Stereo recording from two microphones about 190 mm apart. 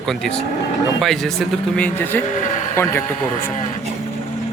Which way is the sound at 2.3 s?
40° left (ahead or behind).